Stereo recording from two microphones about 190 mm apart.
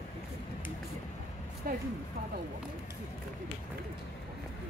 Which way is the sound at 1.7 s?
50° right (ahead or behind).